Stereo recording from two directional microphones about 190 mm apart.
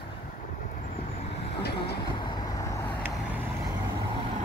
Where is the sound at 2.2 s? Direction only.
20° left (ahead or behind).